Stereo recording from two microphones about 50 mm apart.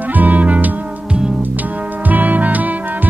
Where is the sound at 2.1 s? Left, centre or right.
Right.